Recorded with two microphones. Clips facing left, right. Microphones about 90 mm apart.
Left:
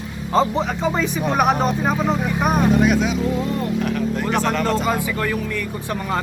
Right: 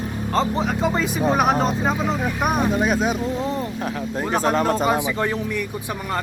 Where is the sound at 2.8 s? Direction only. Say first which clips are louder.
Left 2 dB; 40° right (ahead or behind).